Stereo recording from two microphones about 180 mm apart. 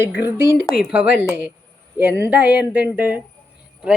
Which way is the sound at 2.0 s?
10° right (ahead or behind).